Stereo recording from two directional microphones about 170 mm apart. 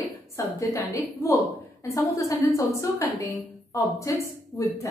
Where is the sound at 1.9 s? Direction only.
20° left (ahead or behind).